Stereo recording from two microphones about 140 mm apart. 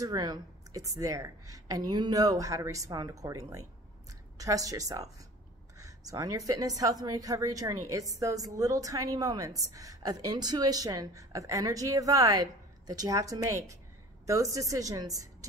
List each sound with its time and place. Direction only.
0.0 s a woman's voice: 30° right (ahead or behind)